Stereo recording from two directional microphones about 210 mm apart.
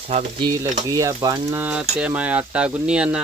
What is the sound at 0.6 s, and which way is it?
Speech, 15° right (ahead or behind).